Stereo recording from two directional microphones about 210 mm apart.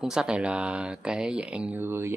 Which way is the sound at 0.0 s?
5° right (ahead or behind).